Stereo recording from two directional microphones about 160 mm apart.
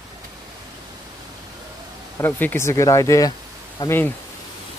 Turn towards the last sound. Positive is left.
turn(degrees=15)  # may be behind; listen again after turning